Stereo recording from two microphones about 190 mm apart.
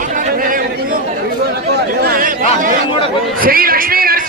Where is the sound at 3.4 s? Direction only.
50° right (ahead or behind).